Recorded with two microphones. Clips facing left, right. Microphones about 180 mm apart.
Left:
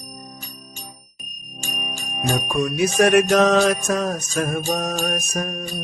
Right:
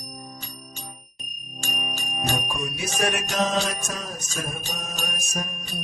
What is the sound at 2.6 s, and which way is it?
Music, 60° left (ahead or behind).